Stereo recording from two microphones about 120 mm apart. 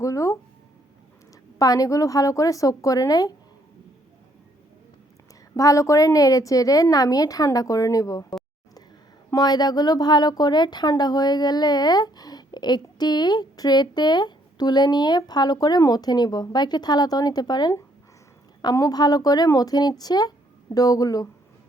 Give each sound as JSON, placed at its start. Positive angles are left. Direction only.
{"t": 0.0, "sound": "a sound", "side_deg": 25}
{"t": 1.5, "sound": "speech", "side_deg": 30}
{"t": 5.5, "sound": "a woman's voice", "side_deg": 25}